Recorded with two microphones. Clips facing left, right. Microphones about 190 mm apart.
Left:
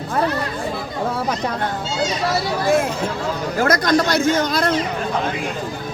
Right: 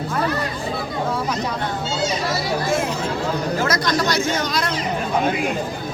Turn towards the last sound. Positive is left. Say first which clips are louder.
# left 4 dB
turn(degrees=55)  # may be behind; listen again after turning